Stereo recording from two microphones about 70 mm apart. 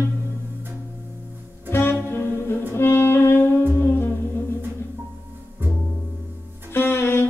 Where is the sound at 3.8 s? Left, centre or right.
Left.